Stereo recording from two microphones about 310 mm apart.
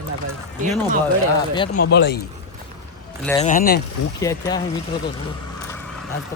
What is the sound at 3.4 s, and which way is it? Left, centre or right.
Speech, left.